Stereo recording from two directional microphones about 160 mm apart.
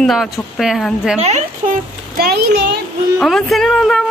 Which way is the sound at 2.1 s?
75° right (ahead or behind).